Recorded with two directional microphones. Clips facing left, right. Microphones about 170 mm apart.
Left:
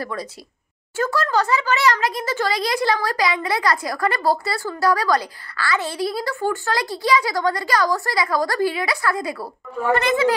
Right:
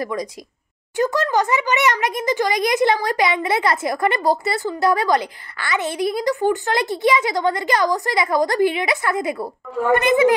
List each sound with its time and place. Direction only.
0.0 s speech: 15° right (ahead or behind)